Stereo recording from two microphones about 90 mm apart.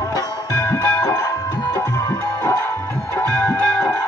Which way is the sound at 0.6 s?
30° left (ahead or behind).